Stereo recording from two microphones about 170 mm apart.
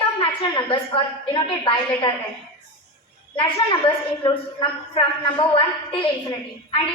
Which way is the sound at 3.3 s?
30° left (ahead or behind).